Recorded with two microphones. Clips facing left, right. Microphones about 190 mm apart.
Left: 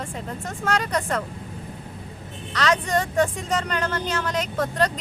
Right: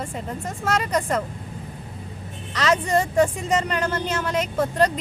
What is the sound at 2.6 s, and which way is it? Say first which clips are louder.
Speech: right 2 dB; 10° right (ahead or behind).